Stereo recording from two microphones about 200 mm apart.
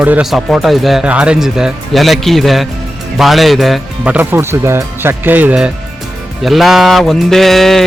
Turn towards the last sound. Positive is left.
turn(degrees=0)  # may be behind; listen again after turning